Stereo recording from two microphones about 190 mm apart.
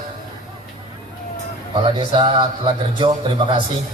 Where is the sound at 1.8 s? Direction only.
30° right (ahead or behind).